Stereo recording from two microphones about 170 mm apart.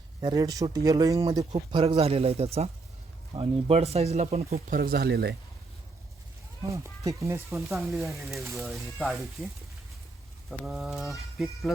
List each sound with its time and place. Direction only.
0.2 s speech: 25° right (ahead or behind); by 4.5 s 40° right (ahead or behind)
4.5 s speech: 60° right (ahead or behind)
6.6 s speech: 20° right (ahead or behind)
7.5 s speech: centre (ahead or behind)
10.5 s speech: centre (ahead or behind)